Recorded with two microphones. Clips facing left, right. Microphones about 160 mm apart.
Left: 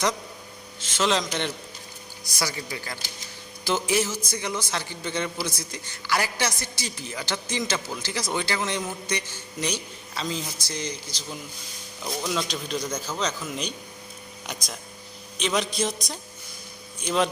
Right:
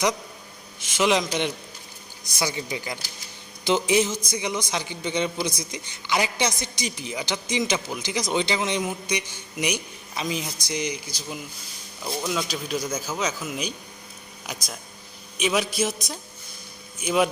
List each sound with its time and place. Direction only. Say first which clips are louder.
0.9 s a man's voice: right 3 dB; 15° right (ahead or behind)